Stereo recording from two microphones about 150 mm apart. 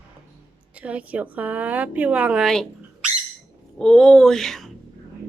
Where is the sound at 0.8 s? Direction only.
10° right (ahead or behind).